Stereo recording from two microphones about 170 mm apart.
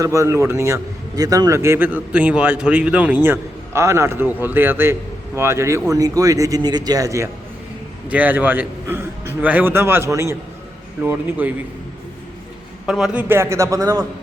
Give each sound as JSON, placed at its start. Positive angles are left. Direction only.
{"t": 0.0, "sound": "a man's voice", "side_deg": -20}
{"t": 12.8, "sound": "a man's voice", "side_deg": -5}